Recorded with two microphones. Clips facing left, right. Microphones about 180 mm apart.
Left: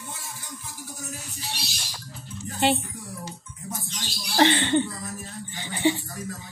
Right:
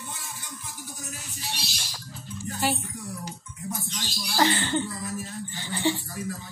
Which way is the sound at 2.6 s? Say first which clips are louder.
Left 5 dB; 25° left (ahead or behind).